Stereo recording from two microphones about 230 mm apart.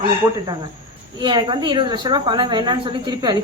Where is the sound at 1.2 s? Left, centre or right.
Centre.